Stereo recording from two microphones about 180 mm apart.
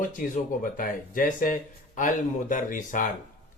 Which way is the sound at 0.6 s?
50° left (ahead or behind).